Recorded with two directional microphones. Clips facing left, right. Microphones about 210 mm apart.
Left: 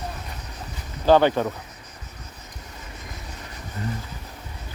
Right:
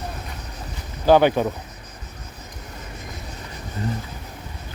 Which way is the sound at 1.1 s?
10° right (ahead or behind).